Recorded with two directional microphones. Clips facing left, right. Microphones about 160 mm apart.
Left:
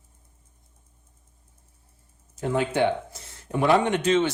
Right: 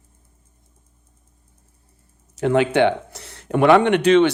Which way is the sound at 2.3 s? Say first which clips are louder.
Right 7 dB; 80° right.